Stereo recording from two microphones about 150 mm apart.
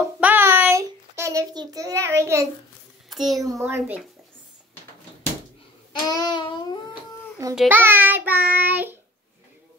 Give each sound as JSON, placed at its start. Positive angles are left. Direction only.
{"t": 0.2, "sound": "child singing", "side_deg": -15}
{"t": 3.1, "sound": "a child's voice", "side_deg": 0}
{"t": 3.5, "sound": "child singing", "side_deg": -15}
{"t": 6.0, "sound": "a sound", "side_deg": 25}
{"t": 7.4, "sound": "a child's voice", "side_deg": -25}
{"t": 7.7, "sound": "child singing", "side_deg": -15}